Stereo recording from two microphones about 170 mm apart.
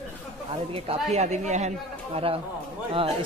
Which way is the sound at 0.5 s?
35° right (ahead or behind).